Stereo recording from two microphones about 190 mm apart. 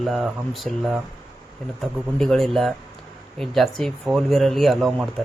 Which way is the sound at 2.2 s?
Centre (ahead or behind).